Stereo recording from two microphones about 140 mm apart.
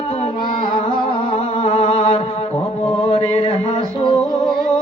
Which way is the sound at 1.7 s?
45° left (ahead or behind).